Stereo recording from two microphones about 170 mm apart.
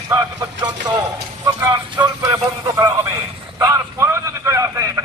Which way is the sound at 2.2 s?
20° right (ahead or behind).